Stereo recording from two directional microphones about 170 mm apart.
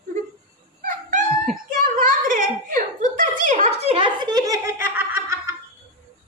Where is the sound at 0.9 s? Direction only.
50° right (ahead or behind).